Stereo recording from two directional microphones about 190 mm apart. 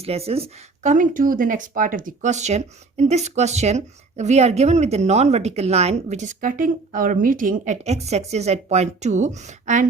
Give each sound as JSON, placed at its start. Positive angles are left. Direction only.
{"t": 0.0, "sound": "speech", "side_deg": -30}